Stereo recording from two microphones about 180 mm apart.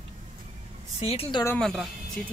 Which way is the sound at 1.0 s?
30° left (ahead or behind).